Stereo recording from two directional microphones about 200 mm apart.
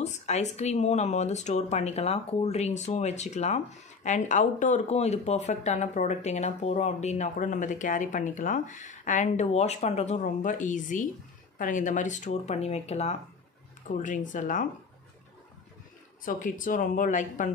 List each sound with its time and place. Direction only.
0.0 s speech: 35° left (ahead or behind)
16.3 s speech: 40° left (ahead or behind)